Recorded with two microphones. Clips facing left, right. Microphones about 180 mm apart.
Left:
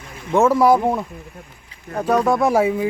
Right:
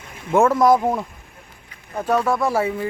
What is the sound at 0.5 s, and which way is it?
Speech, 10° left (ahead or behind).